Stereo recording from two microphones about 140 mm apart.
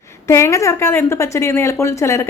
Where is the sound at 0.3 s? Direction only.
20° left (ahead or behind).